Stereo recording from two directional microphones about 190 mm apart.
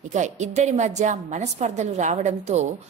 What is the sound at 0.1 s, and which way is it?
A woman's voice, 40° right (ahead or behind).